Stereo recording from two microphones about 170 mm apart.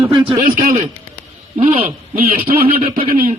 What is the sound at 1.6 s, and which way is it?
Speech, 40° right (ahead or behind).